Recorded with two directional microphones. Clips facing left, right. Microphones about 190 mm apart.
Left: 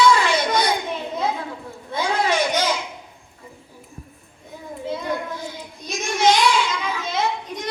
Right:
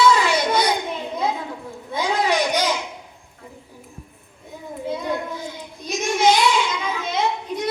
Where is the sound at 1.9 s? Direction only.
15° right (ahead or behind).